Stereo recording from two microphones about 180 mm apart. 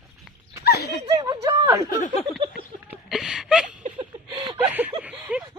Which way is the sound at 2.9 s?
Centre (ahead or behind).